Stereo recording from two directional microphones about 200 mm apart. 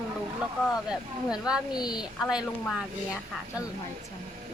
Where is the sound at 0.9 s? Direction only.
5° right (ahead or behind).